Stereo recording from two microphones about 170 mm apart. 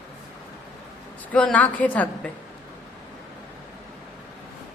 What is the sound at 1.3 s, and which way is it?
Speech, 10° left (ahead or behind).